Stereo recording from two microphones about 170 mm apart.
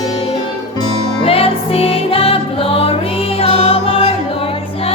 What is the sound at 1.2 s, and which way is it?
Music, 35° left (ahead or behind).